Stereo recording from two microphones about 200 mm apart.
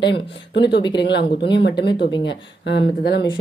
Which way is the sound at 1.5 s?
60° left (ahead or behind).